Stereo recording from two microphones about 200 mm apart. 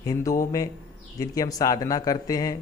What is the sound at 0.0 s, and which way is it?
A man's voice, 15° left (ahead or behind).